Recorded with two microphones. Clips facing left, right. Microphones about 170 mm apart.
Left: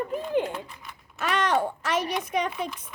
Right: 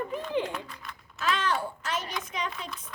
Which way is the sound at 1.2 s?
70° left (ahead or behind).